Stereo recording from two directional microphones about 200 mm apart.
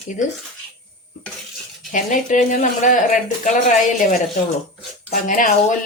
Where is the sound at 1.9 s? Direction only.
40° left (ahead or behind).